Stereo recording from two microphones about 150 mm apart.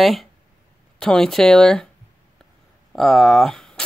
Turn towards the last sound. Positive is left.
turn(degrees=5)  # may be behind; listen again after turning